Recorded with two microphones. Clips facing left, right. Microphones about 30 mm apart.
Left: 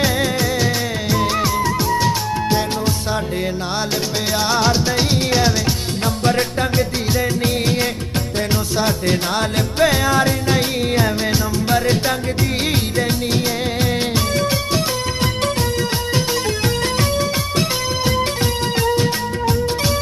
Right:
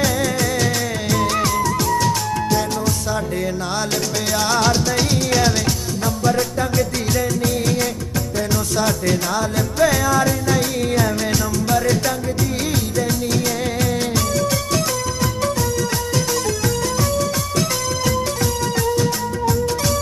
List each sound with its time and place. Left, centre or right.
0.0 s music of bollywood: left
1.6 s music: left
4.4 s music: centre
6.2 s music: left
8.7 s music: left
9.3 s music: left
17.2 s music: left
18.8 s music of bollywood: left